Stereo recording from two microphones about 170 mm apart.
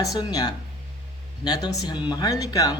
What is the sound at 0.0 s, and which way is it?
Speech, 20° left (ahead or behind).